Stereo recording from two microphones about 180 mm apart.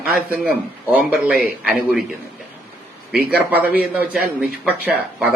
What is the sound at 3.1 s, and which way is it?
A man's voice, 10° right (ahead or behind).